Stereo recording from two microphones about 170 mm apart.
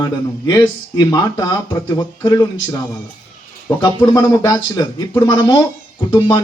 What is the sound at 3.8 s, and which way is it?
A man's voice, 25° left (ahead or behind).